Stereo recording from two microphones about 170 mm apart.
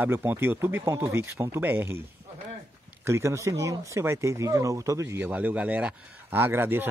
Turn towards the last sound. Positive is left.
turn(degrees=-10)  # may be behind; listen again after turning